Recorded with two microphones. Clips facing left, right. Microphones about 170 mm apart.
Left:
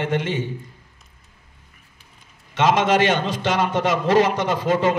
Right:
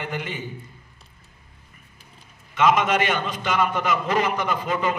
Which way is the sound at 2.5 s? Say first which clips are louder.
Left 2 dB; 90° left.